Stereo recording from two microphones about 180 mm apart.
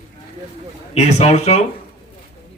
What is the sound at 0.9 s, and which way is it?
Speech, 35° left (ahead or behind).